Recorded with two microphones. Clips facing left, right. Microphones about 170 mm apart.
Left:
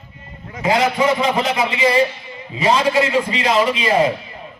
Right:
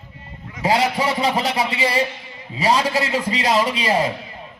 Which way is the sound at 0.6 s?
35° right (ahead or behind).